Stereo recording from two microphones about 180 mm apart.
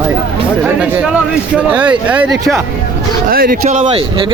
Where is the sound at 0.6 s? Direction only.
5° right (ahead or behind).